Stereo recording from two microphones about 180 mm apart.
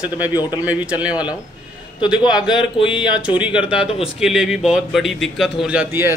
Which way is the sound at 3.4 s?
5° right (ahead or behind).